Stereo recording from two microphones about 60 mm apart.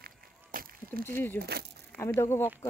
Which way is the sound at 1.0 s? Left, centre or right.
Left.